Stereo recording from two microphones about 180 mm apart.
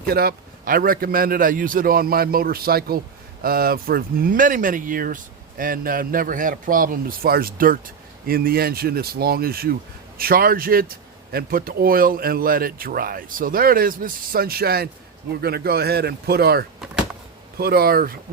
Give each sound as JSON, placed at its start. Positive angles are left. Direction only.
{"t": 0.1, "sound": "a man's voice", "side_deg": -60}